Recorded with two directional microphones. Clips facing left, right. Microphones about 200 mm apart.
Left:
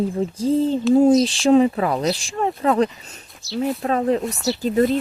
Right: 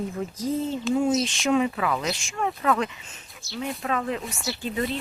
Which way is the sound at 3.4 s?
50° right (ahead or behind).